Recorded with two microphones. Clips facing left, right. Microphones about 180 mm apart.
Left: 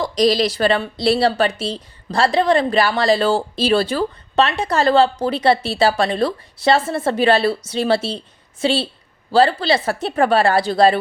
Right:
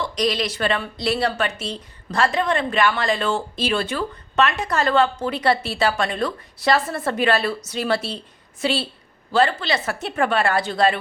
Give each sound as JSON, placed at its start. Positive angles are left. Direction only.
{"t": 0.0, "sound": "a woman's voice", "side_deg": 35}